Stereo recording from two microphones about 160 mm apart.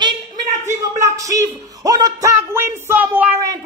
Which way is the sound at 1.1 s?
20° right (ahead or behind).